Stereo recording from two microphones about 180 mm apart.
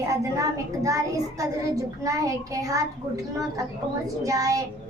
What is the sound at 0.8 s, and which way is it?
Child singing, 20° right (ahead or behind).